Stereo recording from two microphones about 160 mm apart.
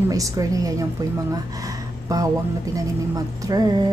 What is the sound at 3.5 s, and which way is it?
Speech, 25° right (ahead or behind).